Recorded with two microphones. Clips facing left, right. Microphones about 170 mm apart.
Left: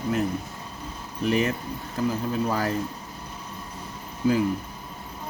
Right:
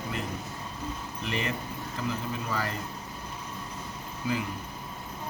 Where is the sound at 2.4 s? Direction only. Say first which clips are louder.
Left 6 dB; 40° left (ahead or behind).